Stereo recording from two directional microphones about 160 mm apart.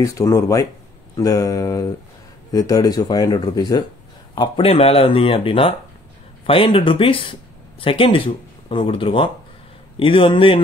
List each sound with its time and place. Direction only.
0.0 s speech: 20° left (ahead or behind)
4.4 s speech: 35° left (ahead or behind)